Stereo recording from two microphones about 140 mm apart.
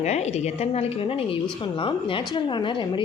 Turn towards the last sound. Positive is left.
turn(degrees=35)  # may be behind; listen again after turning